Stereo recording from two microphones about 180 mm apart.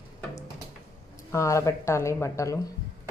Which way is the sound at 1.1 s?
15° left (ahead or behind).